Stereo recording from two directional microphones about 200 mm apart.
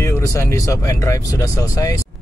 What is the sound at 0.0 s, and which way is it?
A man's voice, 15° left (ahead or behind).